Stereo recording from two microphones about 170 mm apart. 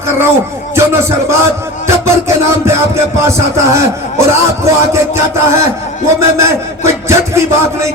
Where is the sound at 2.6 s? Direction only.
15° right (ahead or behind).